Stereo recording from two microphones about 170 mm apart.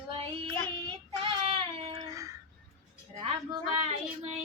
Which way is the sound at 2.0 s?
20° right (ahead or behind).